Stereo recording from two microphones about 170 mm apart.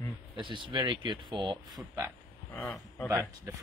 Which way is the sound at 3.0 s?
15° right (ahead or behind).